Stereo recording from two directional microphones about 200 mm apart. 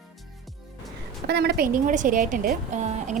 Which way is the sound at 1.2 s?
55° right (ahead or behind).